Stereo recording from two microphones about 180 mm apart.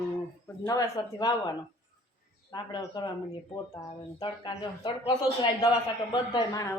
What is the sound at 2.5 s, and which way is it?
Speech, 25° left (ahead or behind).